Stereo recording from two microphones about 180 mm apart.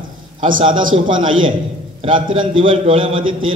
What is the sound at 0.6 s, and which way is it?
A man's voice, 25° right (ahead or behind).